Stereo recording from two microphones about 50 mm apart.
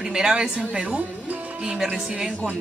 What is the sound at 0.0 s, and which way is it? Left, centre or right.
Speech, centre.